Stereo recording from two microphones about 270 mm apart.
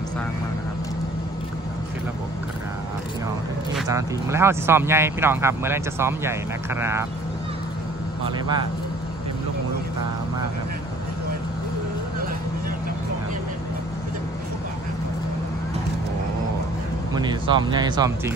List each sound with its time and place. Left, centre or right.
3.9 s speech: centre
17.1 s speech: centre